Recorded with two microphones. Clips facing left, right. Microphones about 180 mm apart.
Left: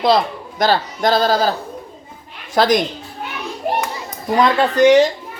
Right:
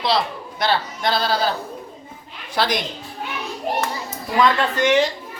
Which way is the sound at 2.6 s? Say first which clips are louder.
Left 7 dB; 45° left (ahead or behind).